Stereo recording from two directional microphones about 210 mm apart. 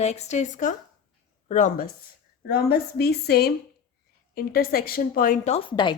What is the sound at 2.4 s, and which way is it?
A woman's voice, 45° left (ahead or behind).